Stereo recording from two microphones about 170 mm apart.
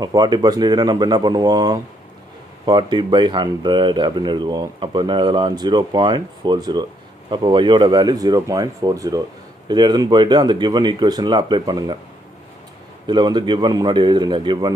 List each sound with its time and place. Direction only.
0.0 s speech: 25° right (ahead or behind)
13.0 s speech: 25° right (ahead or behind)